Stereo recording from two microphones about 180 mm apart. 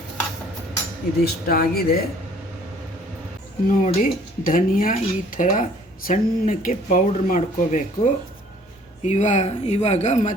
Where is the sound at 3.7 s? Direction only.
50° left (ahead or behind).